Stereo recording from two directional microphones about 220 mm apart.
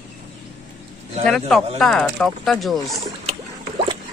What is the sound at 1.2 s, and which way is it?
A man's voice, centre (ahead or behind).